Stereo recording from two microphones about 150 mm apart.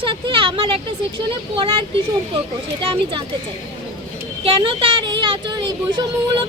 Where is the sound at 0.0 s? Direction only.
35° right (ahead or behind).